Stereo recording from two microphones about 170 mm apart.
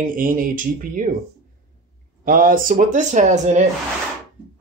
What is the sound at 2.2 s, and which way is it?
Speech, 55° right (ahead or behind).